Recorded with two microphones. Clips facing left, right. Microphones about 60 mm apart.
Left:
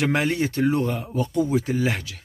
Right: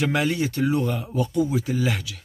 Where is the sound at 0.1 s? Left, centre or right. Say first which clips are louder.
Left 1 dB; left.